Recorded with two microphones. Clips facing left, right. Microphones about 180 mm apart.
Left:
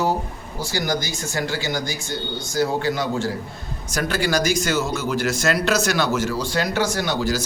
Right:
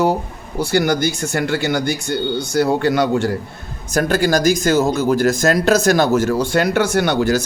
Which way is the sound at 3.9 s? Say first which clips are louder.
Right 6 dB; 50° right (ahead or behind).